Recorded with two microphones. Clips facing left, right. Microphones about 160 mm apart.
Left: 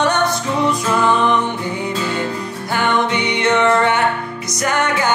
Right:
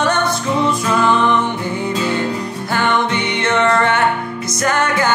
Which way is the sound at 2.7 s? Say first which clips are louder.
Even; 15° left (ahead or behind).